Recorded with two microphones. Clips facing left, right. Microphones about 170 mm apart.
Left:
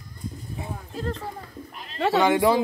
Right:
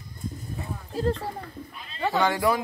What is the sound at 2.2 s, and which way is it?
Speech, 20° left (ahead or behind).